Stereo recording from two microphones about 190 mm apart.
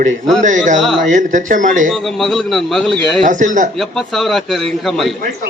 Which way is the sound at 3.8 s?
Centre (ahead or behind).